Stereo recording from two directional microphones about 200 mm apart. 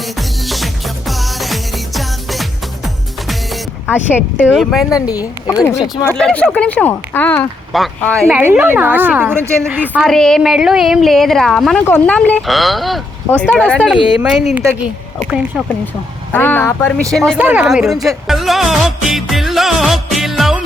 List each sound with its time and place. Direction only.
0.2 s music: centre (ahead or behind)
3.9 s speech: 10° left (ahead or behind)
5.0 s speech: 20° left (ahead or behind)
6.1 s speech: 5° left (ahead or behind)
8.4 s a woman's voice: 10° right (ahead or behind)
10.1 s speech: centre (ahead or behind)
13.7 s speech: 5° right (ahead or behind)
16.3 s speech: 10° left (ahead or behind)
17.1 s speech: centre (ahead or behind)
18.3 s music: centre (ahead or behind)